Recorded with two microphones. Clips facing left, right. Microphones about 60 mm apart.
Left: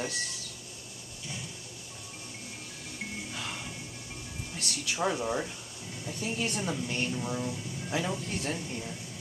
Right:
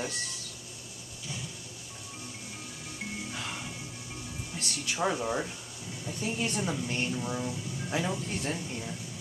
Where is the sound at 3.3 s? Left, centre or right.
Centre.